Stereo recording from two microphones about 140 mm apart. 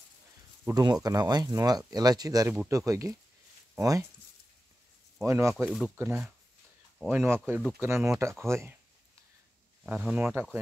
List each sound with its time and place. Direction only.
0.7 s speech: 25° right (ahead or behind)
5.2 s speech: 20° right (ahead or behind)
5.7 s speech: 5° right (ahead or behind)
5.9 s speech: 20° right (ahead or behind)
9.8 s speech: 10° right (ahead or behind)